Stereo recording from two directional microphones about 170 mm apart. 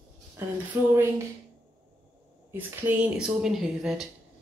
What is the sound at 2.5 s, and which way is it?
Speech, 10° right (ahead or behind).